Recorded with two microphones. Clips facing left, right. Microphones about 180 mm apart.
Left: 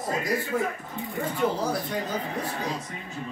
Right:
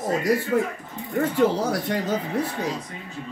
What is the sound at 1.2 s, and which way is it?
Speech, 80° right.